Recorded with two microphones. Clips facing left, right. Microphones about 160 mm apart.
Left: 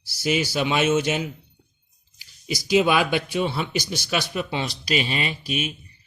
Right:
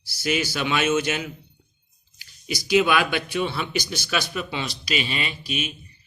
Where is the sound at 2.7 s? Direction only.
30° left (ahead or behind).